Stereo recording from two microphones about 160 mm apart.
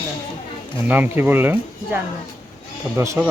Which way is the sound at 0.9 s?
10° right (ahead or behind).